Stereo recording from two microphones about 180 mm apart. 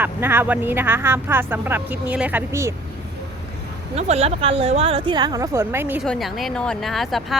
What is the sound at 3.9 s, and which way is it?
A woman's voice, 35° right (ahead or behind).